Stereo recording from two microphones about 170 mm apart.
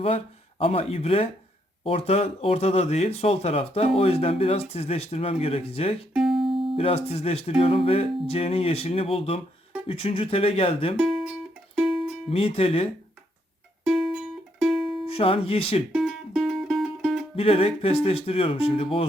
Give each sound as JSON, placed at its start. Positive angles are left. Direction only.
{"t": 0.6, "sound": "speech", "side_deg": 35}
{"t": 6.1, "sound": "music", "side_deg": 0}
{"t": 6.4, "sound": "music", "side_deg": -30}
{"t": 6.7, "sound": "speech", "side_deg": 35}
{"t": 11.7, "sound": "music", "side_deg": 0}
{"t": 12.3, "sound": "speech", "side_deg": 35}
{"t": 13.8, "sound": "music", "side_deg": 0}
{"t": 15.0, "sound": "speech", "side_deg": 35}
{"t": 15.9, "sound": "music", "side_deg": 0}
{"t": 17.3, "sound": "speech", "side_deg": 35}